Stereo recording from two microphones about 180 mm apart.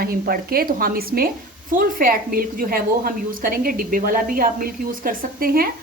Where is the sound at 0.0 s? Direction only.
55° right (ahead or behind).